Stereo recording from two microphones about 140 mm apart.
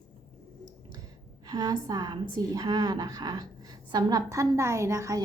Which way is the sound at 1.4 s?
30° right (ahead or behind).